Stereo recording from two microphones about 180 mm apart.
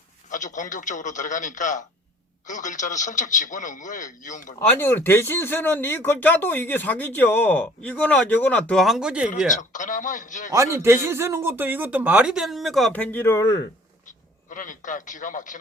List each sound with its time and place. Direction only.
0.3 s a man's voice: 45° left (ahead or behind)
4.6 s speech: 10° left (ahead or behind); by 9.3 s 5° right (ahead or behind)
9.6 s a man's voice: 45° left (ahead or behind)
10.5 s speech: 15° right (ahead or behind); by 13.7 s 20° left (ahead or behind)
14.5 s a man's voice: 50° left (ahead or behind)